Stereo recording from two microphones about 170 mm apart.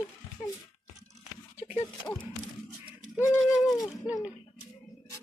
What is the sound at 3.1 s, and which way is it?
Speech, 15° left (ahead or behind).